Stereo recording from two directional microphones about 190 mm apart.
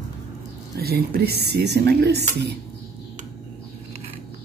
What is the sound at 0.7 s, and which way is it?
Speech, 55° right (ahead or behind).